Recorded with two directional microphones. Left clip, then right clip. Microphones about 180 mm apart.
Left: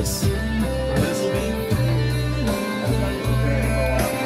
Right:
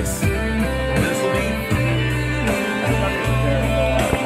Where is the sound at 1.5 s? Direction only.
Centre (ahead or behind).